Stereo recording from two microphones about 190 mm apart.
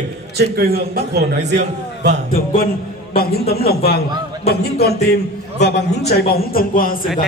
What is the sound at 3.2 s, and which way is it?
A man's voice, 55° left (ahead or behind).